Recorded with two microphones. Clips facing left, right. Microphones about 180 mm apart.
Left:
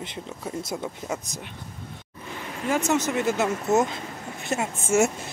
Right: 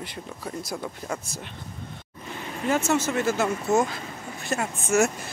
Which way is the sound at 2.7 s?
15° left (ahead or behind).